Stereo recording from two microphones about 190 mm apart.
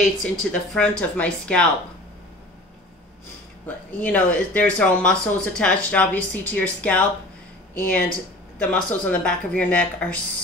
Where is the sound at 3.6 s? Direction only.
10° left (ahead or behind).